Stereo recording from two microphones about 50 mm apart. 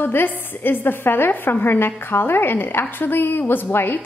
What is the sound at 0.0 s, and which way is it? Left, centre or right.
A woman's voice, left.